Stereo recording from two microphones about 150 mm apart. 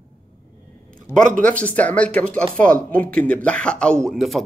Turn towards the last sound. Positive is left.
turn(degrees=0)  # may be behind; listen again after turning